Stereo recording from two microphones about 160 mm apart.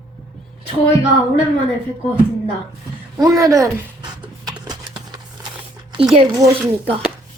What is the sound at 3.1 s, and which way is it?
Speech, 20° right (ahead or behind).